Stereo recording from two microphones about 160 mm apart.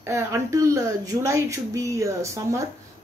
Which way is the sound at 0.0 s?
15° right (ahead or behind).